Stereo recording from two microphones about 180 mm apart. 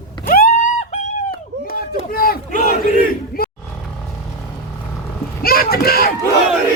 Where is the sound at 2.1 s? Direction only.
55° left (ahead or behind).